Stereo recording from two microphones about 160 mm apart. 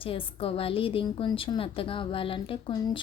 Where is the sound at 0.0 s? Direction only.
35° left (ahead or behind).